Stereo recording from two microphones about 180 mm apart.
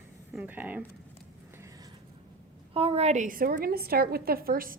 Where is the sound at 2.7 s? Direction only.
35° right (ahead or behind).